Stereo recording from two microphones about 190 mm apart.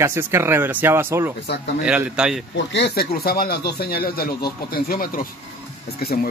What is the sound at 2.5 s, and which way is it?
Speech, 65° left (ahead or behind).